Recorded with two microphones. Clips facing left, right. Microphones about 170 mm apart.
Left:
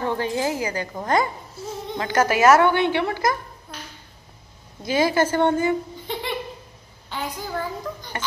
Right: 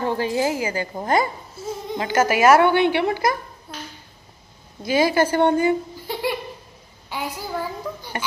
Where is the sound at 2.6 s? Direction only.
15° right (ahead or behind).